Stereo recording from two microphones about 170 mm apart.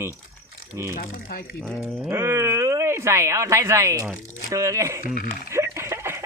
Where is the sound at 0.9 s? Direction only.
60° left (ahead or behind).